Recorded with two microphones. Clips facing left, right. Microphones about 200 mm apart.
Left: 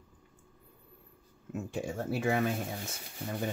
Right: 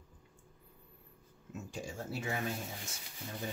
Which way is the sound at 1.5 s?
55° left (ahead or behind).